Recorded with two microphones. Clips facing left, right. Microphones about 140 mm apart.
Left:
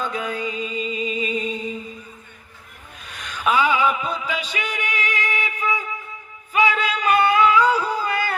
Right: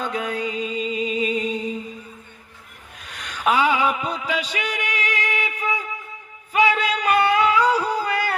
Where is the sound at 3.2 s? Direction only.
65° right (ahead or behind).